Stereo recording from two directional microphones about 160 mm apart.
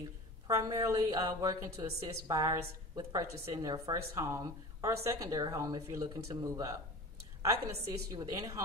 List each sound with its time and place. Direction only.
0.5 s a woman's voice: 20° right (ahead or behind)
7.8 s a woman's voice: 20° right (ahead or behind)